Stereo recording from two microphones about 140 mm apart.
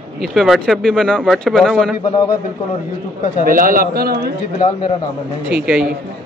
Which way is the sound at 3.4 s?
85° right.